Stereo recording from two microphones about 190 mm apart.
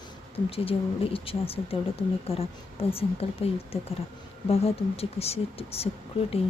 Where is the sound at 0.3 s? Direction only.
30° left (ahead or behind).